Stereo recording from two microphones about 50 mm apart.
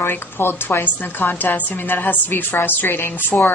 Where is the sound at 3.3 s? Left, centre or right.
Left.